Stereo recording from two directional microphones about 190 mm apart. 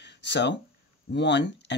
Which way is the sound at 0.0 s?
65° left (ahead or behind).